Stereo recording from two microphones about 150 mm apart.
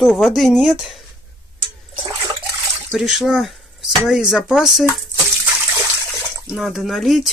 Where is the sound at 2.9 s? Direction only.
Centre (ahead or behind).